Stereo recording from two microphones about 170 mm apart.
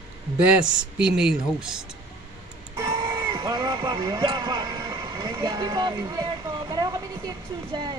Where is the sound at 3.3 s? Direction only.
20° right (ahead or behind).